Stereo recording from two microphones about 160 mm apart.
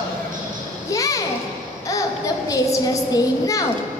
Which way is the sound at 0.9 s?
20° left (ahead or behind).